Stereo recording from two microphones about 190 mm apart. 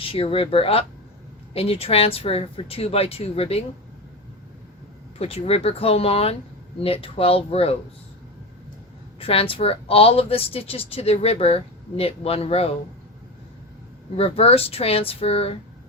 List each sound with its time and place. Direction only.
0.0 s speech: 30° left (ahead or behind)
5.2 s speech: 30° left (ahead or behind)
9.1 s speech: 30° left (ahead or behind)
14.2 s speech: 30° left (ahead or behind)